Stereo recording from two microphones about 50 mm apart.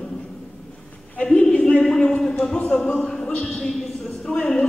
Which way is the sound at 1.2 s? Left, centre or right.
Left.